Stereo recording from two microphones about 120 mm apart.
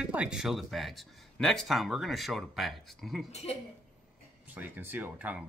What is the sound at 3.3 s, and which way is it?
Speech, 60° left (ahead or behind).